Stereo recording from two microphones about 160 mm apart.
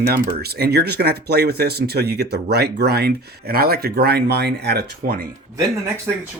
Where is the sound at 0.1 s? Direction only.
80° right.